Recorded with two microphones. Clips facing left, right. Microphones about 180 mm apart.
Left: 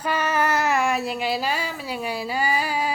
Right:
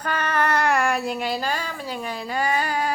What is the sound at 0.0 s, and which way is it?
Speech, 10° left (ahead or behind).